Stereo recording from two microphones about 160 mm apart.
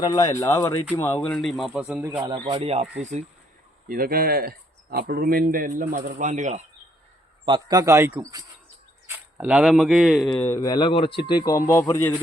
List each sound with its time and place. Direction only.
0.0 s speech: 20° left (ahead or behind); by 2.0 s 5° right (ahead or behind)
2.0 s speech: 20° right (ahead or behind)
2.3 s speech: 30° right (ahead or behind); by 3.2 s 45° right (ahead or behind)
3.8 s speech: 65° right (ahead or behind); by 6.6 s 50° right (ahead or behind)
7.4 s speech: 25° right (ahead or behind)
9.0 s speech: 10° right (ahead or behind)
10.3 s speech: 15° left (ahead or behind)
10.6 s speech: 25° left (ahead or behind)
11.5 s speech: 15° left (ahead or behind)